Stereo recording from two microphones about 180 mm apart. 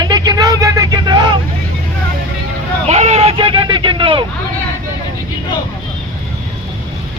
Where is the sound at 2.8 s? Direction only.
40° right (ahead or behind).